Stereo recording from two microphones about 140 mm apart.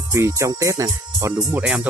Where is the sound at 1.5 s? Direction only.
10° right (ahead or behind).